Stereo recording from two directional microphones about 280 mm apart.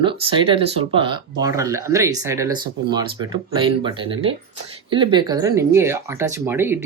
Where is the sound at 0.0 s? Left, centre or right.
Centre.